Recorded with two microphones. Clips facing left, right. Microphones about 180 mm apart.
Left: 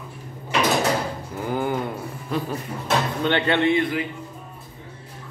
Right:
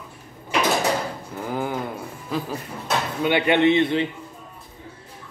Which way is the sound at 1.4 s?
Centre (ahead or behind).